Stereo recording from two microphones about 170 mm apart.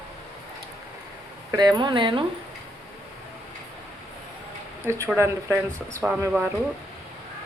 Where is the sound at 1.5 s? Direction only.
25° right (ahead or behind).